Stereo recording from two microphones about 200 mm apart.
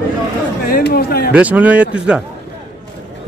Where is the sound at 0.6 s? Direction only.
50° left (ahead or behind).